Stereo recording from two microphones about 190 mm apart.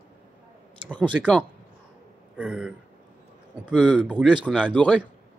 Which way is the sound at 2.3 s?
5° right (ahead or behind).